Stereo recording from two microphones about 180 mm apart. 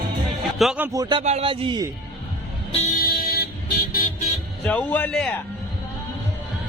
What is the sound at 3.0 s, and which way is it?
Vehicle, 55° left (ahead or behind).